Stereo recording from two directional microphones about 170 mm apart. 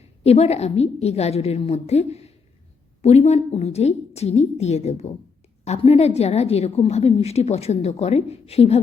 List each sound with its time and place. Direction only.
0.2 s a woman's voice: 40° left (ahead or behind)